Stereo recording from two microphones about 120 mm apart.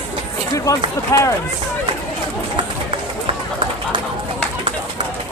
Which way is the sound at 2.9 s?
45° right (ahead or behind).